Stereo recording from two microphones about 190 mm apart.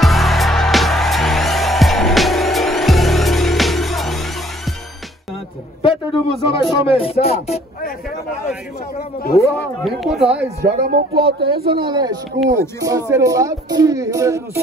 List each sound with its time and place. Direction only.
0.0 s music: centre (ahead or behind)
5.8 s a man's voice: 25° left (ahead or behind)
9.3 s speech: 15° left (ahead or behind)
9.8 s speech: centre (ahead or behind)
10.6 s speech: 55° right (ahead or behind)
11.7 s speech: 25° right (ahead or behind)